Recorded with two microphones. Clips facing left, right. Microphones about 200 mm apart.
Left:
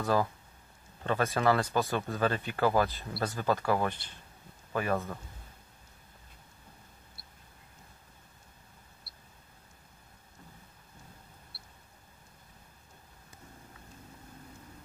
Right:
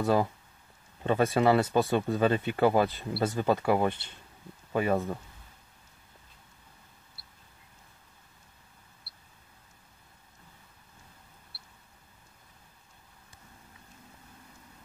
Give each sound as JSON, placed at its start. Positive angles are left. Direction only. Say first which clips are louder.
{"t": 0.0, "sound": "speech", "louder": "right 3 dB", "side_deg": -20}